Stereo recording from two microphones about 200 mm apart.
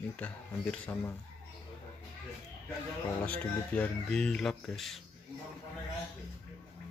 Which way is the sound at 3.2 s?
5° left (ahead or behind).